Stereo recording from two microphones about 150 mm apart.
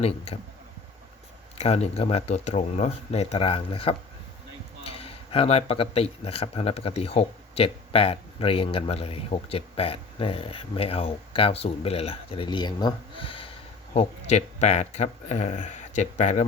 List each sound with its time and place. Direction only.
1.5 s speech: 45° left (ahead or behind)
13.9 s speech: 45° left (ahead or behind)